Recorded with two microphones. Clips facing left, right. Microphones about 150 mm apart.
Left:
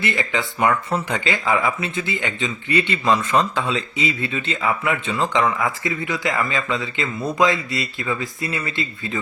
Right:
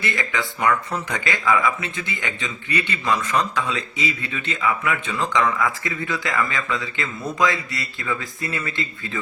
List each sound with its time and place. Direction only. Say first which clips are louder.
0.0 s a man's voice: left 2 dB; 20° left (ahead or behind)